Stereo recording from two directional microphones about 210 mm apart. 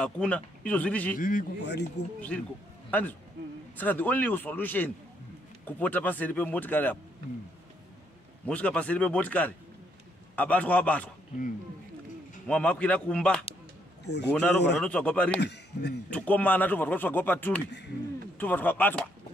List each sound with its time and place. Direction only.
0.0 s speech: 5° left (ahead or behind)
1.1 s speech: 40° left (ahead or behind)
1.6 s speech: 55° left (ahead or behind)
2.9 s speech: 5° left (ahead or behind)
8.5 s speech: 5° left (ahead or behind)
12.4 s speech: 5° left (ahead or behind)
14.0 s speech: 55° left (ahead or behind)
14.3 s speech: 5° left (ahead or behind)
15.4 s a man's voice: 55° left (ahead or behind)
16.1 s speech: 5° left (ahead or behind)